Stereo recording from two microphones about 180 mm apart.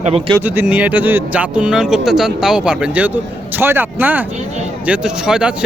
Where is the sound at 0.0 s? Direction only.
35° right (ahead or behind).